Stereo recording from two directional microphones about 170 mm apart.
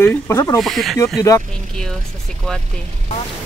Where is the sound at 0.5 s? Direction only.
Centre (ahead or behind).